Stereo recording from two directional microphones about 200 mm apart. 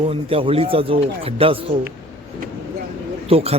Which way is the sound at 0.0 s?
30° right (ahead or behind).